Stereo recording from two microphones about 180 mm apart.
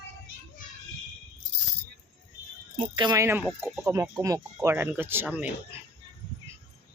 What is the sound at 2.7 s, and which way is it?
Speech, 25° right (ahead or behind).